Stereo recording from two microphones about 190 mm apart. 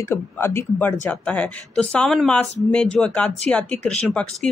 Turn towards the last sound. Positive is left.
turn(degrees=5)  # may be behind; listen again after turning